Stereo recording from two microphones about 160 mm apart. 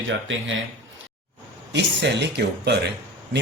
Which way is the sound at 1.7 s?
90° right.